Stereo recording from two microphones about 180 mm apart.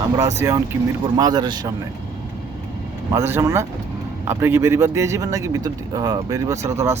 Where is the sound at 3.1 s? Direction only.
15° right (ahead or behind).